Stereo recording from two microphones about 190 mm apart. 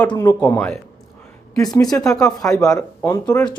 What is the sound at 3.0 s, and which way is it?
Speech, 15° left (ahead or behind).